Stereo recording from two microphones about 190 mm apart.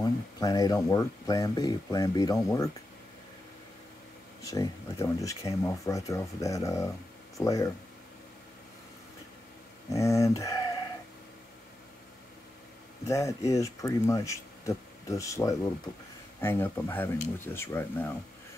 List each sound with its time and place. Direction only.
0.4 s speech: 20° left (ahead or behind)
4.4 s speech: 15° left (ahead or behind)
9.9 s speech: 15° left (ahead or behind)
13.0 s speech: 15° left (ahead or behind)